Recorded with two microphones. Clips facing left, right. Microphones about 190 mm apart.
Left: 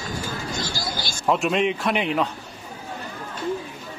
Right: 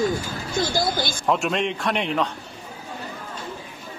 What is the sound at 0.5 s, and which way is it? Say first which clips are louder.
Speech: right 7 dB; 55° right (ahead or behind).